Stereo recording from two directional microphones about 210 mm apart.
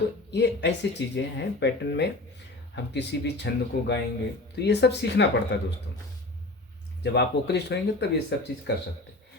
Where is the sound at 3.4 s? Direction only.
55° left (ahead or behind).